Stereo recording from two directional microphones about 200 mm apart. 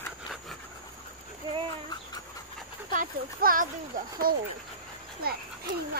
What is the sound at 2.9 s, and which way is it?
Speech, 45° right (ahead or behind).